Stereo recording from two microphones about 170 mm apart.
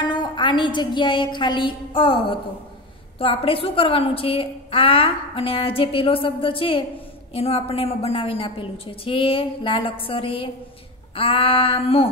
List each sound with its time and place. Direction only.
0.0 s a woman's voice: 25° left (ahead or behind)